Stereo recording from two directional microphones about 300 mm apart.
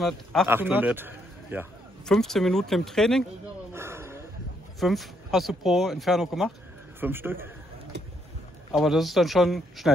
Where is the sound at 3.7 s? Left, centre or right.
Centre.